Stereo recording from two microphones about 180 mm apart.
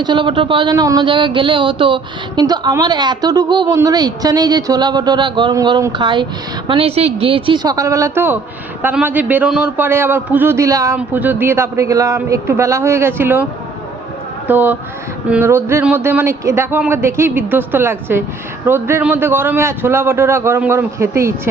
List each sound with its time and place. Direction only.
0.0 s a man's voice: 25° right (ahead or behind)